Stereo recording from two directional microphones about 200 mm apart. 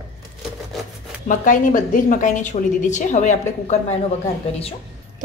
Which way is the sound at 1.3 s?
40° left (ahead or behind).